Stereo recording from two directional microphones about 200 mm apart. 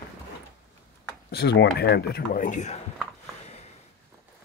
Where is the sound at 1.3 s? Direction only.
55° left (ahead or behind); by 2.8 s 35° left (ahead or behind).